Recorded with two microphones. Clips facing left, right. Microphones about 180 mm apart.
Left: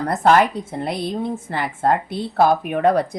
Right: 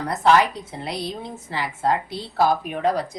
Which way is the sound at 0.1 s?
50° left (ahead or behind).